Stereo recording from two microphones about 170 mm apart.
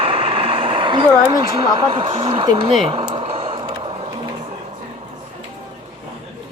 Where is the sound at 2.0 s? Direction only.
35° right (ahead or behind).